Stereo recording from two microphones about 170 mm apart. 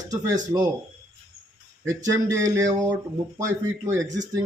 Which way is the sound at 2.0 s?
20° right (ahead or behind).